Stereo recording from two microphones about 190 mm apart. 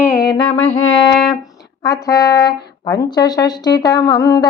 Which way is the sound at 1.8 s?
20° left (ahead or behind).